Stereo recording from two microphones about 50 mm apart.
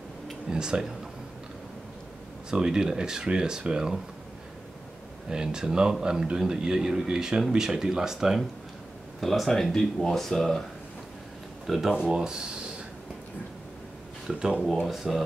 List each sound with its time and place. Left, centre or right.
0.5 s a man's voice: centre
2.5 s a man's voice: centre
5.3 s a man's voice: centre
9.2 s speech: centre
11.6 s speech: centre
14.2 s a man's voice: centre
14.9 s speech: centre